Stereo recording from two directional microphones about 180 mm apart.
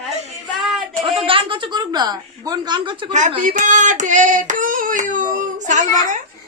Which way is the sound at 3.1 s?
40° right (ahead or behind).